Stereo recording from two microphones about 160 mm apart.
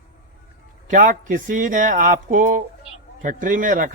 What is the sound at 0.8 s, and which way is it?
Speech, 55° right (ahead or behind).